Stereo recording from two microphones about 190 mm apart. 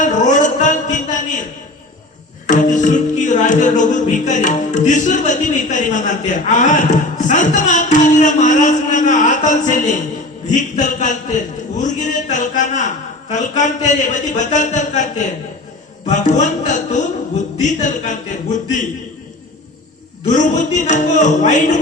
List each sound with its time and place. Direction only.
0.0 s a sound: 40° left (ahead or behind)
2.5 s music: 40° left (ahead or behind)
16.6 s music: 40° left (ahead or behind)
20.2 s music: 40° left (ahead or behind)